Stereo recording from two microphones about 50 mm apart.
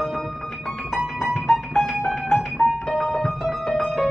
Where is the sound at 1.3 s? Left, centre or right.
Centre.